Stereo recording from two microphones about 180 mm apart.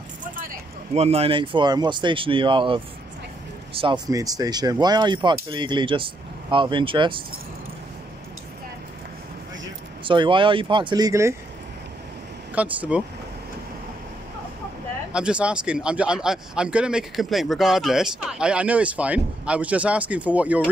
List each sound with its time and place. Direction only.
0.2 s a sound: 50° right (ahead or behind)
1.0 s speech: 35° right (ahead or behind)
10.0 s speech: 25° right (ahead or behind)
12.5 s speech: 10° right (ahead or behind)
15.1 s speech: 5° right (ahead or behind)